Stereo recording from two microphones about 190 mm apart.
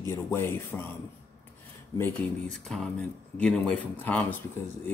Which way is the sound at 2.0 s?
5° left (ahead or behind).